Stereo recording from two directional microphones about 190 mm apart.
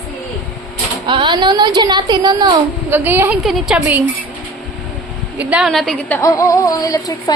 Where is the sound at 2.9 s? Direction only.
10° right (ahead or behind).